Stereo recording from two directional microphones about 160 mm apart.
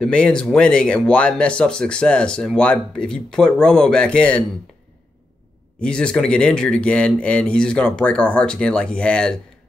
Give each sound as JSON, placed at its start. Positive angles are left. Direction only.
{"t": 0.0, "sound": "speech", "side_deg": 5}
{"t": 5.8, "sound": "speech", "side_deg": 5}